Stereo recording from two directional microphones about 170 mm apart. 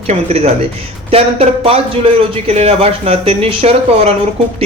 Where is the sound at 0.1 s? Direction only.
40° right (ahead or behind).